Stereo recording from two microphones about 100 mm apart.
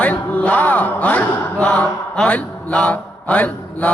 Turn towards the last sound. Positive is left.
turn(degrees=15)  # may be behind; listen again after turning